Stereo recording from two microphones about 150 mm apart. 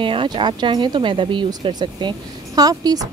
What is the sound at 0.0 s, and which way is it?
Speech, 35° right (ahead or behind).